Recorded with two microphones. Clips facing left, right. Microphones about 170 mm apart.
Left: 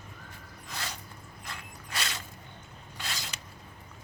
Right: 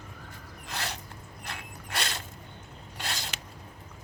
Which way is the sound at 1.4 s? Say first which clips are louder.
Right 3 dB; 65° right (ahead or behind).